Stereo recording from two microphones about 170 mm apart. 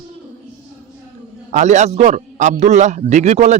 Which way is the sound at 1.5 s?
45° right (ahead or behind).